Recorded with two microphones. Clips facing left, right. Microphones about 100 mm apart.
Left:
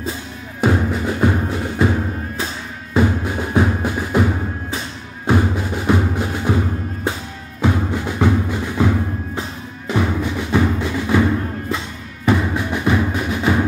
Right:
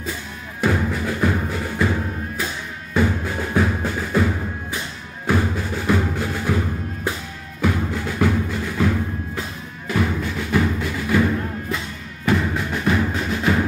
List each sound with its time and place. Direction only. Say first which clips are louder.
0.6 s music: left 3 dB; 25° left (ahead or behind)
7.6 s music: left 3 dB; 20° left (ahead or behind)
12.3 s music: left 3 dB; 15° left (ahead or behind)